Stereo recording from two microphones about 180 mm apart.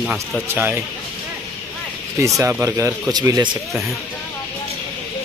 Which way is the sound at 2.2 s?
15° right (ahead or behind).